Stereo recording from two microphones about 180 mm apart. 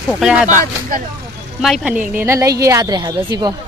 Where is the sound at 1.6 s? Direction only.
Centre (ahead or behind).